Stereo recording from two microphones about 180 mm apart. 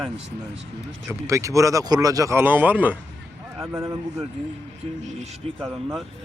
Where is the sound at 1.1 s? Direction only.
15° right (ahead or behind).